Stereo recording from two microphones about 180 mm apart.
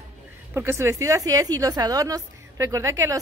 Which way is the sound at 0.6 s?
15° right (ahead or behind).